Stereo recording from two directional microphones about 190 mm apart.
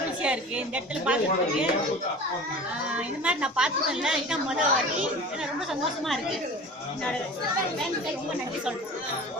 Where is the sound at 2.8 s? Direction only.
5° right (ahead or behind).